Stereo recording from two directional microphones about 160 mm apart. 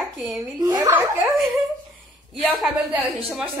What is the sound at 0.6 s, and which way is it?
Speech, 20° right (ahead or behind).